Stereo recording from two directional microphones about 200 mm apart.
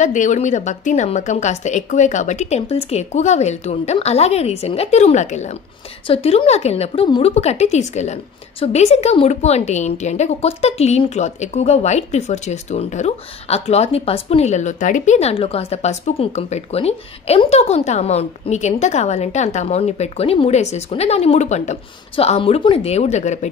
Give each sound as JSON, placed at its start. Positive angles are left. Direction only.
{"t": 0.0, "sound": "a woman's voice", "side_deg": 40}